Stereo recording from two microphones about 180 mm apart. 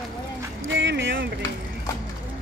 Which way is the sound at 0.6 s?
85° right.